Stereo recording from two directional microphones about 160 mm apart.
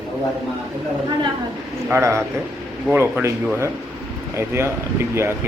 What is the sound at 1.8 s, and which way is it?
A man's voice, 15° right (ahead or behind).